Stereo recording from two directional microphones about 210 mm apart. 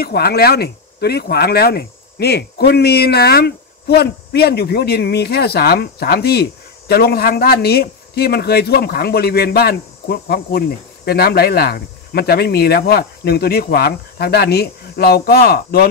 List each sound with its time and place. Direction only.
0.0 s speech: 50° left (ahead or behind)